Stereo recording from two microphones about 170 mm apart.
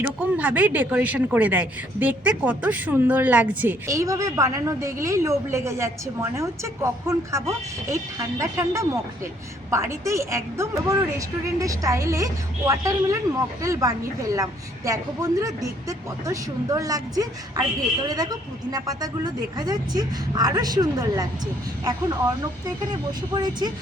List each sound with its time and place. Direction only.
0.0 s a woman's voice: 10° right (ahead or behind)
23.3 s a woman's voice: 25° right (ahead or behind)